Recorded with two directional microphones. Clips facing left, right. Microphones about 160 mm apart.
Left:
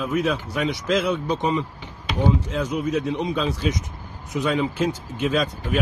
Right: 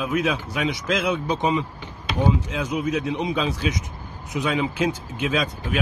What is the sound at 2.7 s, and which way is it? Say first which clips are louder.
Speech: right 1 dB; 15° right (ahead or behind).